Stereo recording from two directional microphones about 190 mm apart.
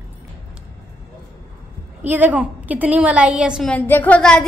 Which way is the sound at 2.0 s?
10° right (ahead or behind).